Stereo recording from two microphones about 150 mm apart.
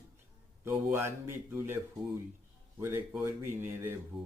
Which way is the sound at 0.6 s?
15° right (ahead or behind).